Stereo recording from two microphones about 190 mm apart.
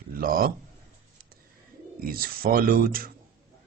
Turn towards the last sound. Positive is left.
turn(degrees=-50)  # may be behind; listen again after turning